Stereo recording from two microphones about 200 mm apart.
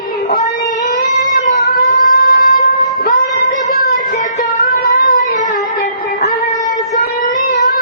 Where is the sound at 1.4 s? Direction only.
40° left (ahead or behind).